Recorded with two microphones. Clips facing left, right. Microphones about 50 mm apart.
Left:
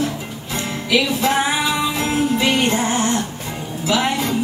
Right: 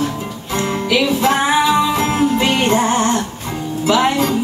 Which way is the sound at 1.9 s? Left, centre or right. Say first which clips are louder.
Right 3 dB; right.